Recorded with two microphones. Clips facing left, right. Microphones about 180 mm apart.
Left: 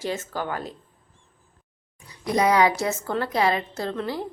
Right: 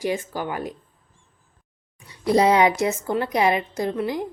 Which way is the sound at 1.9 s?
25° right (ahead or behind).